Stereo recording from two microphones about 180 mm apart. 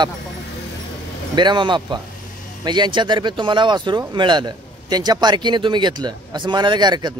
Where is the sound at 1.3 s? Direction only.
25° right (ahead or behind).